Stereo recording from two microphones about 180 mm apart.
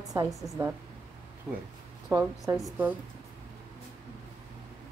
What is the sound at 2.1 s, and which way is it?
Speech, 20° right (ahead or behind).